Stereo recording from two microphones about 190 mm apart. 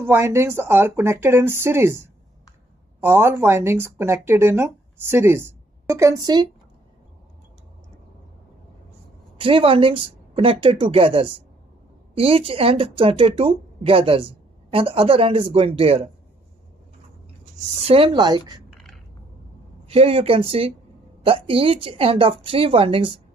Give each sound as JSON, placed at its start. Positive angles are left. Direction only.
{"t": 0.0, "sound": "speech", "side_deg": -15}
{"t": 3.0, "sound": "speech", "side_deg": -10}
{"t": 9.4, "sound": "speech", "side_deg": -30}
{"t": 17.7, "sound": "speech", "side_deg": -30}
{"t": 19.9, "sound": "speech", "side_deg": -30}